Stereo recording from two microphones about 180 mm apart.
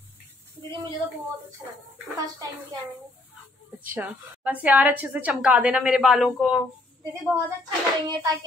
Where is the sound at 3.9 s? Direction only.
10° right (ahead or behind).